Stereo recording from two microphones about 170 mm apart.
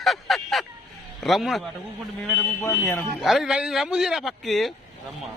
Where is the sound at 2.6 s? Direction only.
15° left (ahead or behind).